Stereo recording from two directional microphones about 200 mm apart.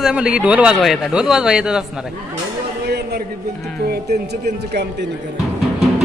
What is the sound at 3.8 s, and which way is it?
Speech, 55° right (ahead or behind).